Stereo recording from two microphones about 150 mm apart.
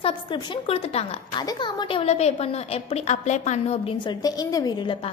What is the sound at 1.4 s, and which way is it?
A woman's voice, 30° left (ahead or behind).